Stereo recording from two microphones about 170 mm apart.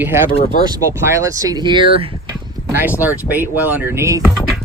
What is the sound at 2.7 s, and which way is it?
Speech, 10° right (ahead or behind).